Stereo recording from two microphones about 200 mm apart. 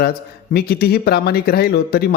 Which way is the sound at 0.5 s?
50° left (ahead or behind).